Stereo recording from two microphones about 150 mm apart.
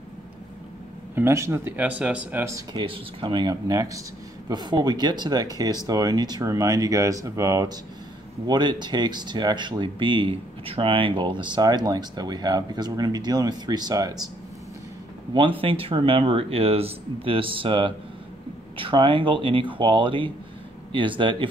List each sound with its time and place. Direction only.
1.1 s speech: 15° right (ahead or behind)
2.7 s speech: 35° right (ahead or behind)
15.3 s speech: 35° right (ahead or behind)